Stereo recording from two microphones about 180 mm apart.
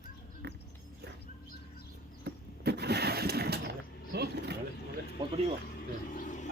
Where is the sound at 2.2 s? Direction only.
65° right (ahead or behind).